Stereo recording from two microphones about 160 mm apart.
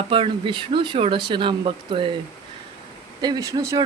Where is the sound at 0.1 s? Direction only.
30° right (ahead or behind).